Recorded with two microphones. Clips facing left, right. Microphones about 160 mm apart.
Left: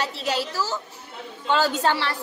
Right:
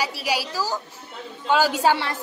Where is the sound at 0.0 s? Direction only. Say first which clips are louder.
Even; 10° right (ahead or behind).